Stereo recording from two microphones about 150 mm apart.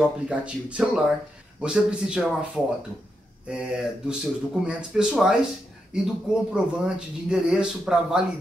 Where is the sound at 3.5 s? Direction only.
5° right (ahead or behind).